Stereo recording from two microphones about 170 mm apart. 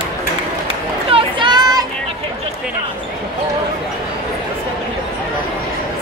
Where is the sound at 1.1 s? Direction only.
25° right (ahead or behind).